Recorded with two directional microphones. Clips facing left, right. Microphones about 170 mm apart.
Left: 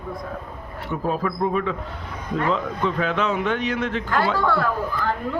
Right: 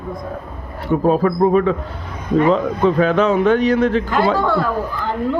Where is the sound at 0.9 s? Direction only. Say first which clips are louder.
Right 9 dB; 40° right (ahead or behind).